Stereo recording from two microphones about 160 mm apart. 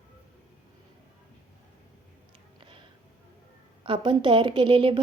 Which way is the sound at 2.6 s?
30° right (ahead or behind).